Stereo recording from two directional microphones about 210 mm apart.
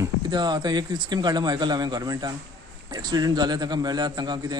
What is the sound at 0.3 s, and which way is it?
A man's voice, 20° right (ahead or behind).